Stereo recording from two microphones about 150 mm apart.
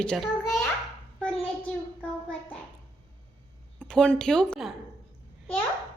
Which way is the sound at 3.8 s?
5° left (ahead or behind).